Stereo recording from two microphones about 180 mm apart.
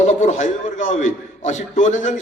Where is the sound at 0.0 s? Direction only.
40° left (ahead or behind).